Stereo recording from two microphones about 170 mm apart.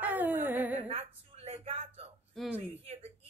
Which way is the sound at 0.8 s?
40° right (ahead or behind).